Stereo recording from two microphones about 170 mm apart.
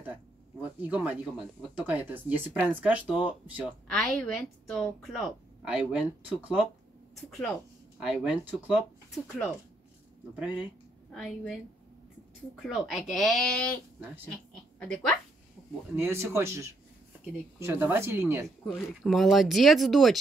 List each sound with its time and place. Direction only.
0.0 s speech: 10° right (ahead or behind)
3.9 s a woman's voice: 5° left (ahead or behind)
7.2 s a woman's voice: 5° left (ahead or behind)
10.4 s speech: 10° right (ahead or behind)
11.1 s a woman's voice: 5° left (ahead or behind)
12.6 s a woman's voice: centre (ahead or behind)
14.5 s a sound: 5° left (ahead or behind)
16.0 s speech: 15° right (ahead or behind)
19.0 s a woman's voice: centre (ahead or behind)